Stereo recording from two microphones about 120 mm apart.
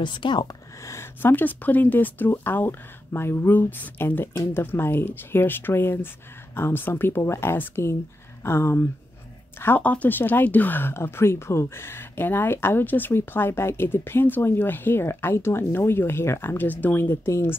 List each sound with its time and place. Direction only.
0.0 s speech: 40° left (ahead or behind)
0.8 s speech: 20° left (ahead or behind)